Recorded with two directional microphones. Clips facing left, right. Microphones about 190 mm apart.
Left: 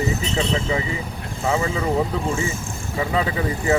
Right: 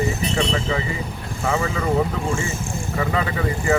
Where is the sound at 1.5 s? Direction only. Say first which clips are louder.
Left 1 dB; 15° left (ahead or behind).